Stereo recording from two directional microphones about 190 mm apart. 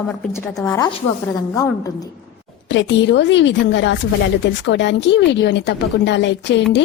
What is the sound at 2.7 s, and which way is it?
A woman's voice, 70° left (ahead or behind).